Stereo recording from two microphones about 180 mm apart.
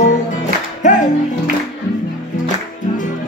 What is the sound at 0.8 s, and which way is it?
Music, 45° left (ahead or behind).